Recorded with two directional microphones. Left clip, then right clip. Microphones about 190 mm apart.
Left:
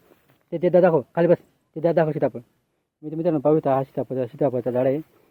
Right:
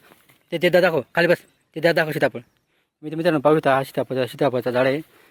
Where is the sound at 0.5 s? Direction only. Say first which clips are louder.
Even; centre (ahead or behind).